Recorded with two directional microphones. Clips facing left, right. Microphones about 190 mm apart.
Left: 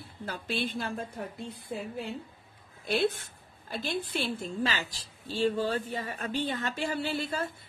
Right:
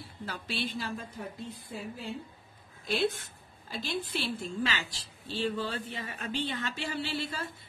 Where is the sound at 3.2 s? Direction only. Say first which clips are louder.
Even; 50° left (ahead or behind).